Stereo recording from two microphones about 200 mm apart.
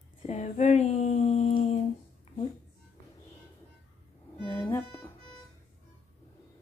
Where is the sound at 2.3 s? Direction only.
30° left (ahead or behind).